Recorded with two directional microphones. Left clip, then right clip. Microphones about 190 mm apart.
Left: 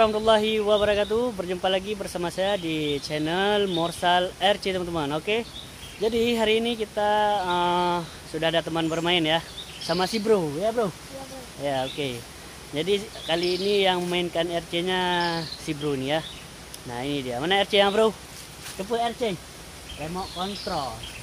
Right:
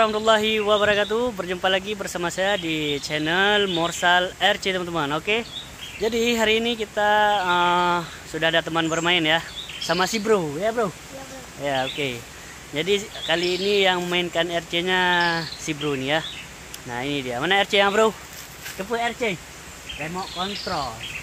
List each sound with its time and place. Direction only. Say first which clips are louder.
0.0 s a man's voice: right 1 dB; 10° right (ahead or behind)